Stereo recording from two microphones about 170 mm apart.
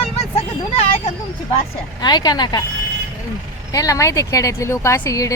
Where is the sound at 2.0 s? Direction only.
25° left (ahead or behind).